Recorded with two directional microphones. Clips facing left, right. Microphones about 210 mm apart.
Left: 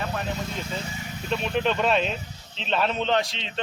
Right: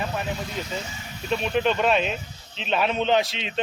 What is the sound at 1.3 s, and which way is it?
A man's voice, 5° right (ahead or behind).